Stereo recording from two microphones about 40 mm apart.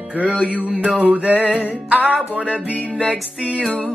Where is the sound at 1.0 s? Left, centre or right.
Right.